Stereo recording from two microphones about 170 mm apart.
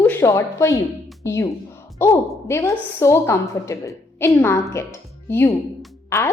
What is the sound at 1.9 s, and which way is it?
A woman's voice, 15° left (ahead or behind).